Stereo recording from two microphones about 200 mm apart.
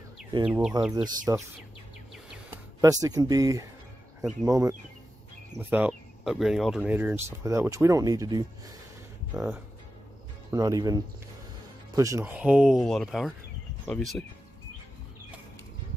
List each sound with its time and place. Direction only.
0.5 s speech: 5° right (ahead or behind)
0.9 s speech: 20° right (ahead or behind)
2.5 s speech: 15° right (ahead or behind); by 14.2 s centre (ahead or behind)